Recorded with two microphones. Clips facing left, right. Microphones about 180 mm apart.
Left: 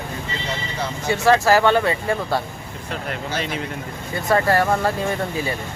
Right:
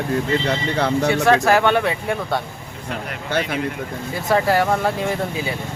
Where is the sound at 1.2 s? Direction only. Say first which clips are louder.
Left 2 dB; centre (ahead or behind).